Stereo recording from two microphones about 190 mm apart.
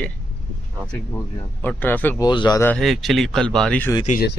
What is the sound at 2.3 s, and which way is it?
Speech, 20° left (ahead or behind).